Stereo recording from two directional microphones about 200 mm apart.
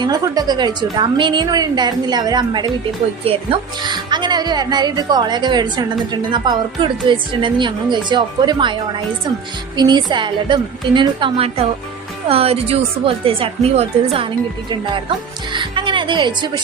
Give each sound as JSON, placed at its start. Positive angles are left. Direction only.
{"t": 0.0, "sound": "a woman's voice", "side_deg": -20}
{"t": 15.5, "sound": "a woman's voice", "side_deg": -25}